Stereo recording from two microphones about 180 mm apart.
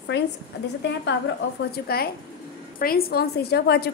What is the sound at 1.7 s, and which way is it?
A woman's voice, 60° left (ahead or behind).